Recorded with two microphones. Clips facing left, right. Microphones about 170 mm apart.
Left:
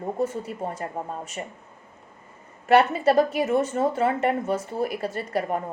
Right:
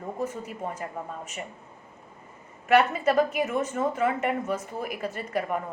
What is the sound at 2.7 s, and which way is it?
A woman's voice, 30° left (ahead or behind).